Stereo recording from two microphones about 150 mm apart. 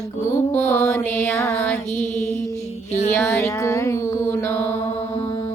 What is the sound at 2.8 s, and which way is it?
Music, 50° left (ahead or behind).